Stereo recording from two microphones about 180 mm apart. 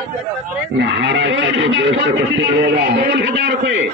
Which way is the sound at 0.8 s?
85° right.